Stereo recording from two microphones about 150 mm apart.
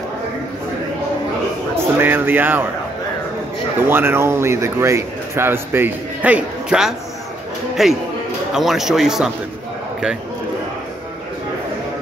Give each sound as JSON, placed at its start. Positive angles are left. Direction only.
{"t": 1.8, "sound": "speech", "side_deg": -15}
{"t": 3.9, "sound": "speech", "side_deg": -15}